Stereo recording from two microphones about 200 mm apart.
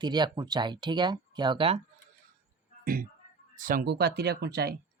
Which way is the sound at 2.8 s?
45° right (ahead or behind).